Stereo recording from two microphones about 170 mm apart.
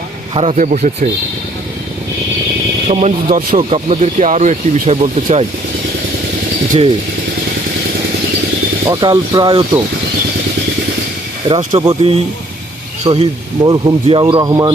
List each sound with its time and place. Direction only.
0.3 s speech: 40° right (ahead or behind)
2.8 s speech: 40° right (ahead or behind)
8.9 s speech: 25° right (ahead or behind)
11.4 s speech: 25° right (ahead or behind)